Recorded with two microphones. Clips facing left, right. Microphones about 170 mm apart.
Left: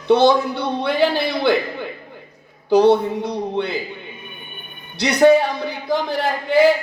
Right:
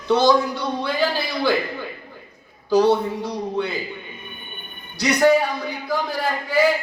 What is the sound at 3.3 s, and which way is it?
Speech, 25° left (ahead or behind).